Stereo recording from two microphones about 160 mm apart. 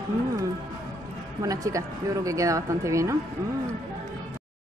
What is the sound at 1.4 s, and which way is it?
Speech, 20° right (ahead or behind).